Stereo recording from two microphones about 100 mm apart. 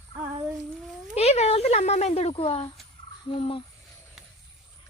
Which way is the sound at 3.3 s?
65° left (ahead or behind).